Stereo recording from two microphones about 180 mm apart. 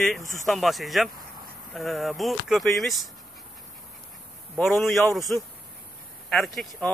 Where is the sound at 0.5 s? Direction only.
Centre (ahead or behind).